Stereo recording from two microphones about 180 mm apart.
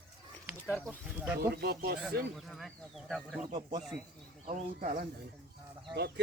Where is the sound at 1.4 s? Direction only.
60° right (ahead or behind).